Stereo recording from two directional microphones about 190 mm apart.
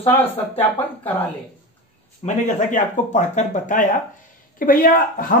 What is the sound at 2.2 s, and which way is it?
Speech, 40° left (ahead or behind).